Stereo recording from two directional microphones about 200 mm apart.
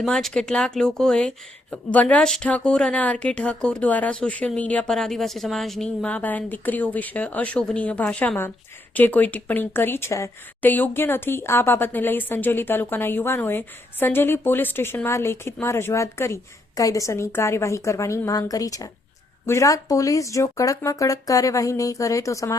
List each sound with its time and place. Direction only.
0.0 s speech: centre (ahead or behind)